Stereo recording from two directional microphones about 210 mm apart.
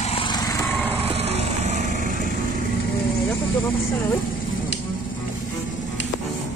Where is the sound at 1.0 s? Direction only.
30° right (ahead or behind).